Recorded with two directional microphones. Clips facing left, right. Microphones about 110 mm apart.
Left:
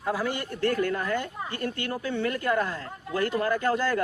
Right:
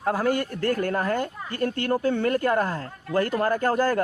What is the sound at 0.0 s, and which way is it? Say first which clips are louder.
A woman's voice: right 5 dB; 50° right (ahead or behind).